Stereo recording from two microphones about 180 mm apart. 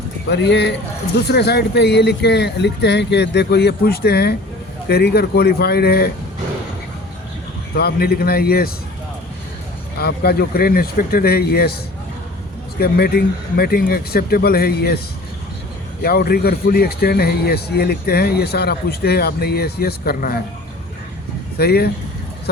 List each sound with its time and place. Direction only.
0.3 s a man's voice: 70° left (ahead or behind)
7.8 s a man's voice: 60° left (ahead or behind)
10.0 s a man's voice: 60° left (ahead or behind)
12.8 s a man's voice: 60° left (ahead or behind)
16.0 s a man's voice: 55° left (ahead or behind)
21.6 s a man's voice: 60° left (ahead or behind)